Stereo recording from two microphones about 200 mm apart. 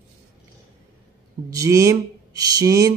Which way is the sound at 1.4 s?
15° right (ahead or behind).